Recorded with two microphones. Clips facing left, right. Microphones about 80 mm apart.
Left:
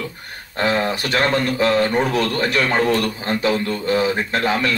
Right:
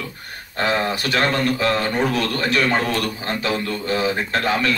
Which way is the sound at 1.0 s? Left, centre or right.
Left.